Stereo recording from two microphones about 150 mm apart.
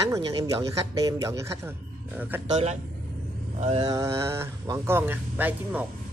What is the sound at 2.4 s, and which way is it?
Speech, 45° right (ahead or behind).